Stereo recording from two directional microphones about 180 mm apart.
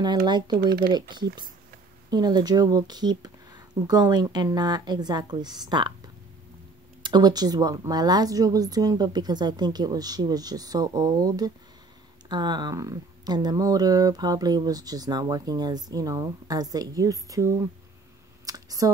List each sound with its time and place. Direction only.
0.0 s speech: 25° right (ahead or behind)
7.0 s speech: 25° right (ahead or behind)
18.4 s a sound: 20° right (ahead or behind)